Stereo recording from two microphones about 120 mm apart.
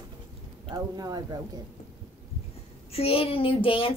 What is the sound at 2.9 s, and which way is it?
Child singing, 55° left (ahead or behind).